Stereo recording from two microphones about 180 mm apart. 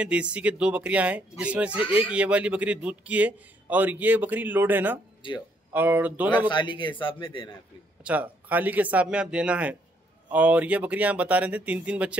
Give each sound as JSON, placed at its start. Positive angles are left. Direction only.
{"t": 0.0, "sound": "a man's voice", "side_deg": -5}
{"t": 5.2, "sound": "speech", "side_deg": 25}
{"t": 5.7, "sound": "a man's voice", "side_deg": -10}
{"t": 6.5, "sound": "speech", "side_deg": 25}
{"t": 8.0, "sound": "a man's voice", "side_deg": -10}